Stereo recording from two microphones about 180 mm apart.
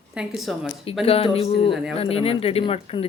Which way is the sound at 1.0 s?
30° left (ahead or behind).